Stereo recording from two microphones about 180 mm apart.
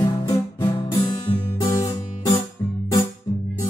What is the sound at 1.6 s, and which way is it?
Music, 15° left (ahead or behind).